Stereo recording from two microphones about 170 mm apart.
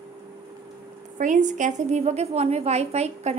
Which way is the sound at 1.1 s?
45° right (ahead or behind).